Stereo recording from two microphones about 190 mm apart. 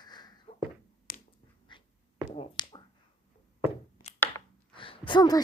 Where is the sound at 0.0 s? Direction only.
20° left (ahead or behind).